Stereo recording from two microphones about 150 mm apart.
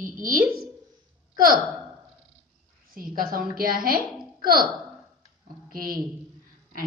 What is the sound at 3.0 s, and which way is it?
A woman's voice, 70° right (ahead or behind).